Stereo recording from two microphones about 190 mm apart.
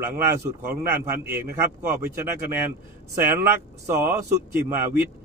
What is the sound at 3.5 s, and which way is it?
A man's voice, 15° right (ahead or behind).